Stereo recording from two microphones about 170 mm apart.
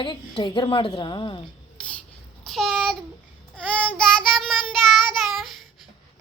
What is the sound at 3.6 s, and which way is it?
Child singing, 5° left (ahead or behind).